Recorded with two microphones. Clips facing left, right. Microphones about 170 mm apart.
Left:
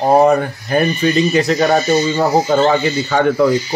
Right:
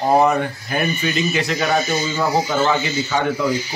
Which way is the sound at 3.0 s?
60° left (ahead or behind).